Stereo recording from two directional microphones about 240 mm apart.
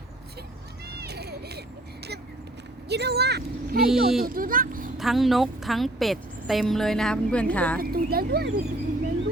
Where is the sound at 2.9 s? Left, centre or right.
Right.